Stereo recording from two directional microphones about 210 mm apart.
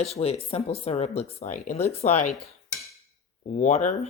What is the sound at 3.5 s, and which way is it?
Speech, 35° left (ahead or behind).